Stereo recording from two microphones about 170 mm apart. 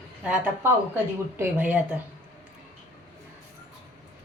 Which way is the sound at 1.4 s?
10° right (ahead or behind).